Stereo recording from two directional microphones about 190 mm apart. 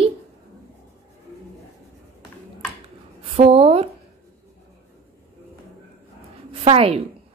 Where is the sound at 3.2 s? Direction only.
30° right (ahead or behind).